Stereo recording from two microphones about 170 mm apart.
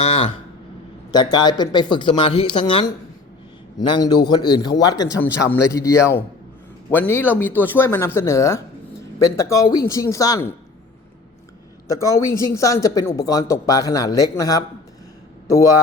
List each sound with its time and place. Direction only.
0.0 s speech: 35° left (ahead or behind)
1.1 s speech: 25° left (ahead or behind)
11.9 s speech: 15° left (ahead or behind)